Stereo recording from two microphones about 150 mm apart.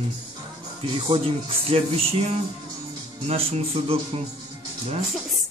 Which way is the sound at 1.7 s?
40° right (ahead or behind).